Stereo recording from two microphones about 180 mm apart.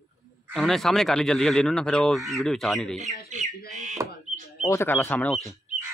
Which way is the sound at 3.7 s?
40° right (ahead or behind).